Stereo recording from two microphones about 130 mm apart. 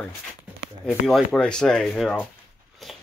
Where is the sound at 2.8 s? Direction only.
Centre (ahead or behind).